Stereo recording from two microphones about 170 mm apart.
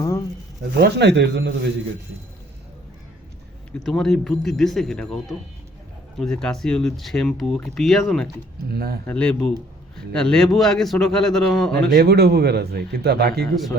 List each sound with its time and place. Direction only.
0.0 s speech: 20° left (ahead or behind)
0.8 s speech: 85° right
3.7 s speech: 5° left (ahead or behind)
8.7 s speech: 65° right (ahead or behind)
9.0 s speech: 10° left (ahead or behind)
11.7 s speech: 70° right (ahead or behind)